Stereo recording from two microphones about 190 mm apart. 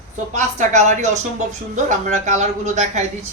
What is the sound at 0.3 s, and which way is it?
Speech, 40° right (ahead or behind).